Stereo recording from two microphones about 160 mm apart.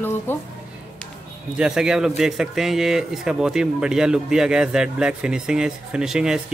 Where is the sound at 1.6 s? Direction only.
5° right (ahead or behind).